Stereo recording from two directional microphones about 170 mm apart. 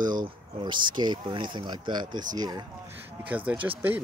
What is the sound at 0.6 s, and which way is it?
Speech, 25° right (ahead or behind).